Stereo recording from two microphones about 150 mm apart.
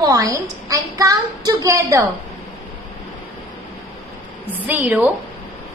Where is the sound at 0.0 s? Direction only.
20° right (ahead or behind).